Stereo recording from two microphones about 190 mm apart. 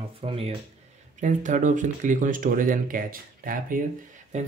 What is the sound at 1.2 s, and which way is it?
Speech, 40° right (ahead or behind).